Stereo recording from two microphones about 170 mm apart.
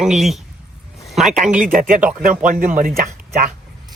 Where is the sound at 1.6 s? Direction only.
50° right (ahead or behind).